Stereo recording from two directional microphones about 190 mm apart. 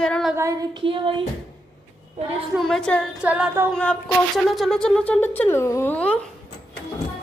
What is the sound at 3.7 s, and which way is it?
Speech, 5° left (ahead or behind).